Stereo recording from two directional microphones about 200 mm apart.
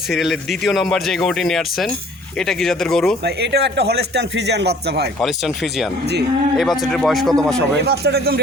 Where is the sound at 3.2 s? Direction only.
60° right (ahead or behind).